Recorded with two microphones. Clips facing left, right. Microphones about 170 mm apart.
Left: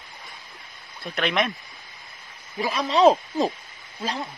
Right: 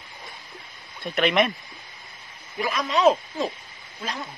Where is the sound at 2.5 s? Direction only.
35° left (ahead or behind).